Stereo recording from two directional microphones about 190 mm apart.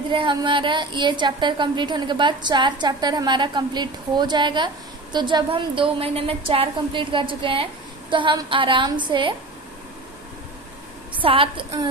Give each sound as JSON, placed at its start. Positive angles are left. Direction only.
{"t": 0.1, "sound": "a woman's voice", "side_deg": -25}
{"t": 11.1, "sound": "a woman's voice", "side_deg": -25}